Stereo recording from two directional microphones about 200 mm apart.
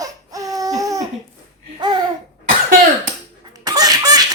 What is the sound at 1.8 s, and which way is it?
Babbling, 20° right (ahead or behind).